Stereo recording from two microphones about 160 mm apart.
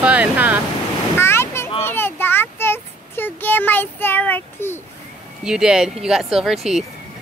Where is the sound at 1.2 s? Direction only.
15° left (ahead or behind).